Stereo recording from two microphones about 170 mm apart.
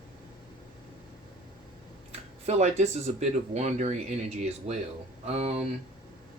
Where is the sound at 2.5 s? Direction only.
40° right (ahead or behind).